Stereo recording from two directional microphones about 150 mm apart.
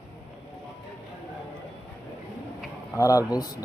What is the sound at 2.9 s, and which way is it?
Speech, 20° left (ahead or behind).